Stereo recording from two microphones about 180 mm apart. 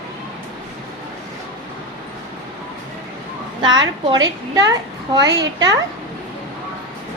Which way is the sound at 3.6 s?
25° right (ahead or behind).